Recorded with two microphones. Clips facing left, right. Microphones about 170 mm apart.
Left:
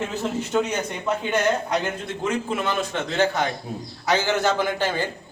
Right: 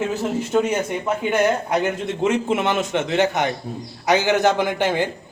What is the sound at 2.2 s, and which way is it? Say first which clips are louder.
A man's voice: right 5 dB; 20° right (ahead or behind).